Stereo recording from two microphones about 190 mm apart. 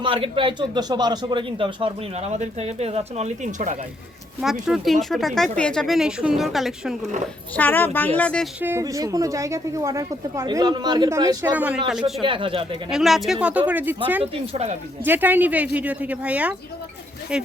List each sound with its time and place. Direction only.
0.0 s speech: 30° right (ahead or behind)
4.6 s speech: centre (ahead or behind)
7.5 s speech: 10° left (ahead or behind)
8.6 s a woman's voice: 15° right (ahead or behind)
12.2 s speech: 25° right (ahead or behind)
12.9 s a woman's voice: centre (ahead or behind)
14.5 s speech: 35° right (ahead or behind)
15.0 s a woman's voice: 10° right (ahead or behind)